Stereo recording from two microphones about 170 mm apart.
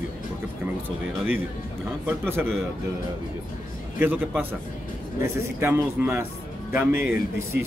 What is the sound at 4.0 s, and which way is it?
A man's voice, 10° right (ahead or behind).